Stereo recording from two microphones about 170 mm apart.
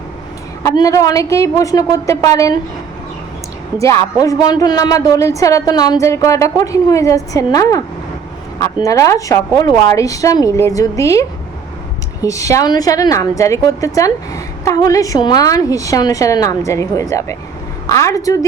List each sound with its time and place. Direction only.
0.6 s a woman's voice: 20° left (ahead or behind)
3.8 s a woman's voice: 20° left (ahead or behind)